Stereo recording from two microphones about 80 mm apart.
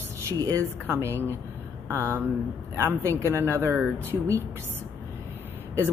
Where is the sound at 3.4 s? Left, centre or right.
Right.